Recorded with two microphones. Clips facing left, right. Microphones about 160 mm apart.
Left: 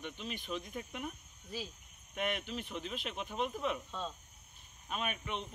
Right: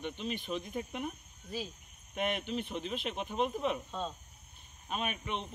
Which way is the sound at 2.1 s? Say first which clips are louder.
Right 3 dB; 30° right (ahead or behind).